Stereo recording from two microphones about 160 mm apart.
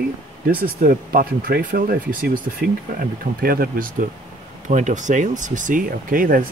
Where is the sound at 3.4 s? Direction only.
65° right (ahead or behind).